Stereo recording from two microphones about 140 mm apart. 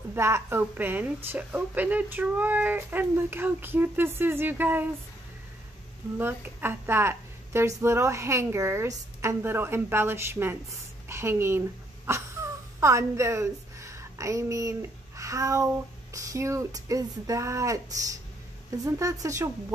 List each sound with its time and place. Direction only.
0.1 s a woman's voice: 15° right (ahead or behind)
6.1 s a woman's voice: 15° right (ahead or behind)